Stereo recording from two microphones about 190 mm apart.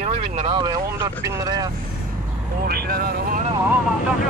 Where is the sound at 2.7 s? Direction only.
55° right (ahead or behind).